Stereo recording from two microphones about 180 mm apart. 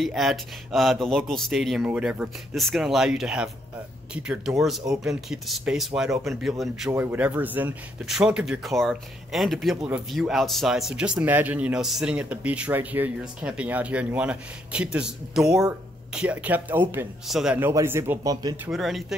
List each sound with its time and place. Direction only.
0.0 s speech: centre (ahead or behind)
17.6 s speech: 10° right (ahead or behind)
18.7 s speech: centre (ahead or behind)